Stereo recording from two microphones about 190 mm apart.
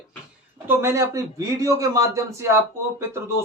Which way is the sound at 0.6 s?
15° right (ahead or behind).